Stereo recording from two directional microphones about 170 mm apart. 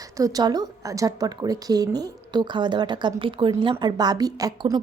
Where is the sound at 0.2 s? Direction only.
20° right (ahead or behind).